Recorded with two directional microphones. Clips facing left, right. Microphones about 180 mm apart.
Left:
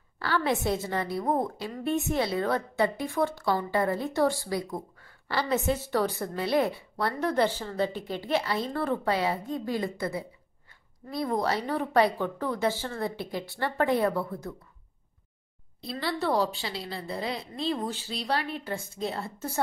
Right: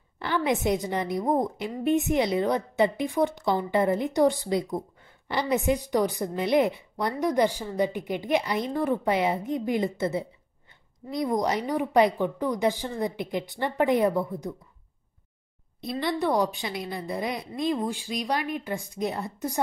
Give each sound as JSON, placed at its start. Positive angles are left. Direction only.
{"t": 0.2, "sound": "a woman's voice", "side_deg": -20}
{"t": 15.8, "sound": "a woman's voice", "side_deg": -20}